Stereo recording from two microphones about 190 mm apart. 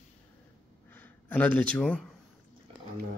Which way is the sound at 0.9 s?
10° left (ahead or behind).